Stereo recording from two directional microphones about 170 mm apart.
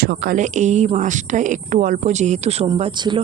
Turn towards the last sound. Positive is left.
turn(degrees=-30)  # may be behind; listen again after turning